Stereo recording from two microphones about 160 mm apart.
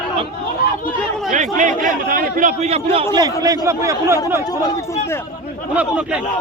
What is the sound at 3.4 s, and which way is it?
Speech, 20° right (ahead or behind).